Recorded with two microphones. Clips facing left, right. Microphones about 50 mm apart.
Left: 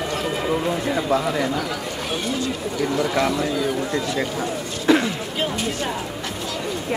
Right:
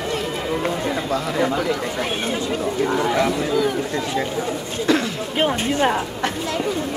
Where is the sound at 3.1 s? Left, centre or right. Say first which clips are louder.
Right 1 dB; centre.